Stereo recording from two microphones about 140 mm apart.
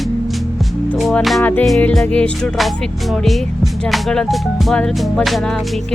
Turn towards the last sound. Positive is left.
turn(degrees=5)  # may be behind; listen again after turning